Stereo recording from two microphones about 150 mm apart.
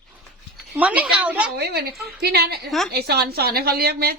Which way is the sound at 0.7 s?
10° right (ahead or behind).